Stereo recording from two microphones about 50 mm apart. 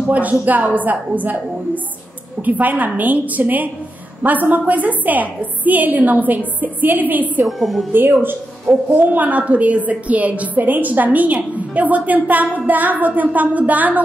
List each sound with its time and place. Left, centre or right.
0.1 s a woman's voice: right
2.4 s a woman's voice: right
7.4 s a woman's voice: centre
7.9 s a woman's voice: right